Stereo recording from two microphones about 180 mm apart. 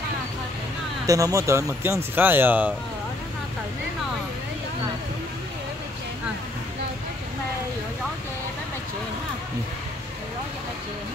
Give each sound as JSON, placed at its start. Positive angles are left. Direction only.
{"t": 1.0, "sound": "speech", "side_deg": -20}